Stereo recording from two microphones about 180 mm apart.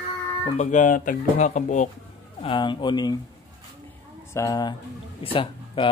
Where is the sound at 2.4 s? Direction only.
25° left (ahead or behind).